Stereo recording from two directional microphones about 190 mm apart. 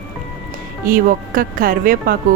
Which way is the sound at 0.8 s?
45° right (ahead or behind).